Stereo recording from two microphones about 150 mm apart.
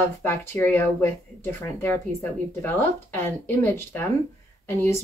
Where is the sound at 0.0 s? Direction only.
15° left (ahead or behind).